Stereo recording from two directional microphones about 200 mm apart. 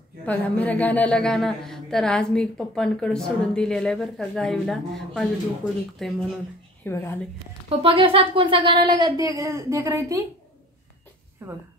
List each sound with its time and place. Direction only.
0.2 s a woman's voice: 5° left (ahead or behind)
7.8 s speech: 25° right (ahead or behind)
11.4 s speech: 10° right (ahead or behind)